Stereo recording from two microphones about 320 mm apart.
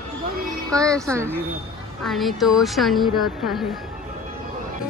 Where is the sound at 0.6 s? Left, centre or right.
Centre.